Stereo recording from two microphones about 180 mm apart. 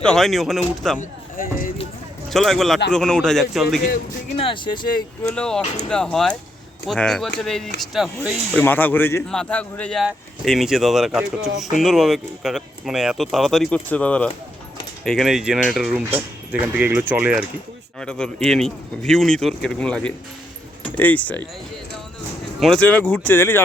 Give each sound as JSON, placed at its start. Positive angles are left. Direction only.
{"t": 0.0, "sound": "speech", "side_deg": 5}
{"t": 1.4, "sound": "run", "side_deg": 50}
{"t": 2.3, "sound": "speech", "side_deg": 0}
{"t": 4.4, "sound": "speech", "side_deg": 30}
{"t": 5.3, "sound": "speech", "side_deg": 5}
{"t": 8.5, "sound": "speech", "side_deg": 10}
{"t": 18.0, "sound": "speech", "side_deg": 5}
{"t": 22.6, "sound": "speech", "side_deg": 5}